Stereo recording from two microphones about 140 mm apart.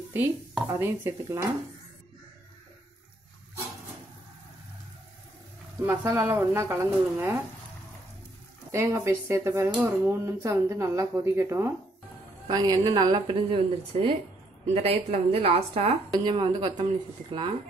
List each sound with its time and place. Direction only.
0.7 s speech: 15° right (ahead or behind)
5.8 s speech: 20° right (ahead or behind)
8.7 s a woman's voice: 20° right (ahead or behind); by 16.0 s 50° right (ahead or behind)
16.1 s a woman's voice: 35° right (ahead or behind)